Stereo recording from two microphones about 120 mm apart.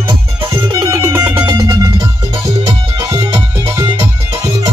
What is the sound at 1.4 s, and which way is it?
Music, 30° right (ahead or behind).